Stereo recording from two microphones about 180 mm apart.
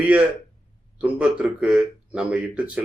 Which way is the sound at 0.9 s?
5° right (ahead or behind).